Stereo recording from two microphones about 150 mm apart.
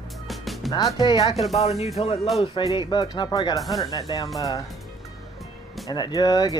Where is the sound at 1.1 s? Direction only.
40° left (ahead or behind).